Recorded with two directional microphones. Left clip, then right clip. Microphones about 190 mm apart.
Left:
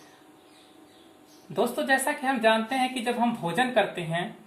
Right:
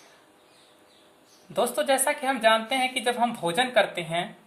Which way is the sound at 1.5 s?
50° right (ahead or behind).